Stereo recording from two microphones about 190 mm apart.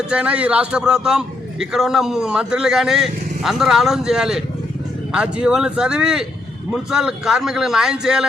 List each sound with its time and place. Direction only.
0.1 s a man's voice: 5° right (ahead or behind)